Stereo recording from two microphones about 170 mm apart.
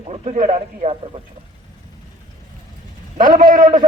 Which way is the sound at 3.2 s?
50° right (ahead or behind).